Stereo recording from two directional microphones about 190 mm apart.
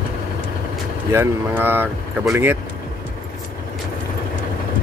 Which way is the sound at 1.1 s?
10° right (ahead or behind).